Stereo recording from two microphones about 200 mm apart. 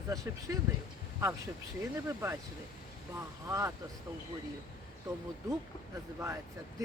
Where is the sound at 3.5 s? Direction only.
15° right (ahead or behind).